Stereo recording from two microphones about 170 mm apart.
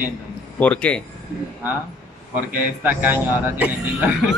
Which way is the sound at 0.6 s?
5° left (ahead or behind).